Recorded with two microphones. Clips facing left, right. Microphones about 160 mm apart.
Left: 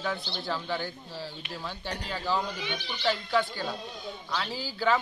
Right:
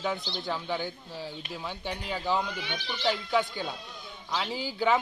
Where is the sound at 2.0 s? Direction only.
20° right (ahead or behind).